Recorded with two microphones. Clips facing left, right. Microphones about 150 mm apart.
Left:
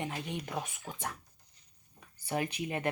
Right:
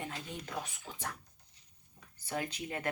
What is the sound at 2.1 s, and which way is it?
Speech, 15° left (ahead or behind).